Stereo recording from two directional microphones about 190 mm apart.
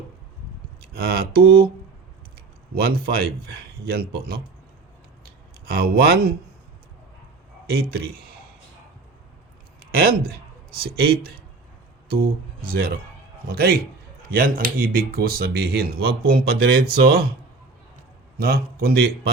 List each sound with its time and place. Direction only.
0.9 s speech: 55° right (ahead or behind)
2.7 s speech: 55° right (ahead or behind)
5.6 s speech: 50° right (ahead or behind)
7.7 s speech: 55° right (ahead or behind)
9.9 s a man's voice: 50° right (ahead or behind)
18.3 s speech: 50° right (ahead or behind)